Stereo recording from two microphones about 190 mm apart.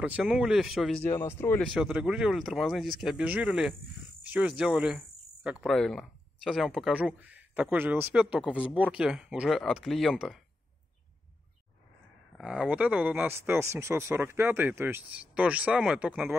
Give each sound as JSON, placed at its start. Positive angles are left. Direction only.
{"t": 0.0, "sound": "cricket", "side_deg": -5}
{"t": 1.0, "sound": "cricket", "side_deg": 10}
{"t": 12.4, "sound": "speech", "side_deg": -5}